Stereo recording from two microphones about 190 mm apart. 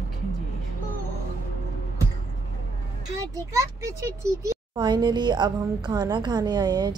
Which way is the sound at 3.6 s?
15° right (ahead or behind).